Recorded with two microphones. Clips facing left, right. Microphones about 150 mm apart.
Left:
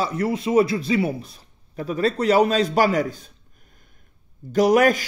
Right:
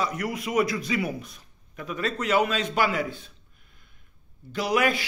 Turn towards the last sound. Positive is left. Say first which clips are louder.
# left 8 dB
turn(degrees=45)  # may be behind; listen again after turning